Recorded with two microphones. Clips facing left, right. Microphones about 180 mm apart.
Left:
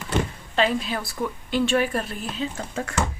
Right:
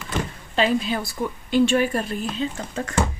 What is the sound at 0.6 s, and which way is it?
A woman's voice, centre (ahead or behind).